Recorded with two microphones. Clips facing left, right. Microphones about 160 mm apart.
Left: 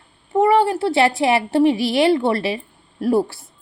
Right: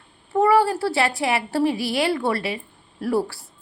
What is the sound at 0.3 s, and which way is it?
A woman's voice, 20° left (ahead or behind).